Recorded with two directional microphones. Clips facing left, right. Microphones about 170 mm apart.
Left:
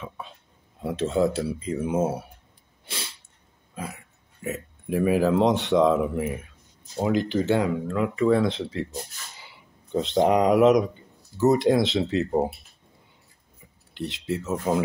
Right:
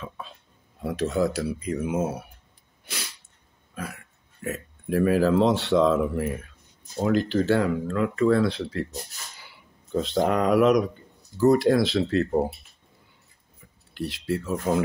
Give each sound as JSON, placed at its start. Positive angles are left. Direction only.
{"t": 0.8, "sound": "speech", "side_deg": 25}
{"t": 2.8, "sound": "sneeze", "side_deg": 25}
{"t": 4.4, "sound": "speech", "side_deg": 15}
{"t": 9.9, "sound": "speech", "side_deg": 20}
{"t": 13.9, "sound": "speech", "side_deg": 20}